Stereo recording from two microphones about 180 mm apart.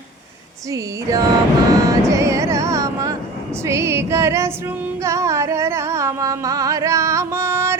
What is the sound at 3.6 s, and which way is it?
Female singing, 15° right (ahead or behind).